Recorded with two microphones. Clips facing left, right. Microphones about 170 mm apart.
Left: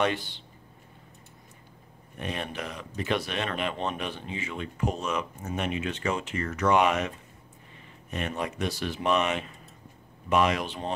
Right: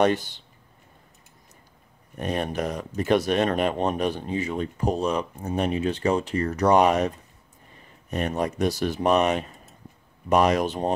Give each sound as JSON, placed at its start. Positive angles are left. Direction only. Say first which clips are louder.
{"t": 0.0, "sound": "speech", "louder": "right 6 dB", "side_deg": -45}
{"t": 2.1, "sound": "speech", "louder": "right 7 dB", "side_deg": -40}